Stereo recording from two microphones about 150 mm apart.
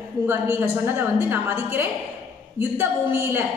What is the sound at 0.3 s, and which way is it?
A woman's voice, 15° right (ahead or behind).